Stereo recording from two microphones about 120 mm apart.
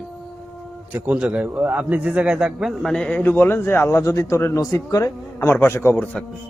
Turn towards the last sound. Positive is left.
turn(degrees=20)  # may be behind; listen again after turning